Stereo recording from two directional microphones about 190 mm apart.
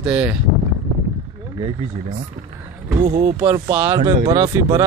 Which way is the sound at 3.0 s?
30° right (ahead or behind).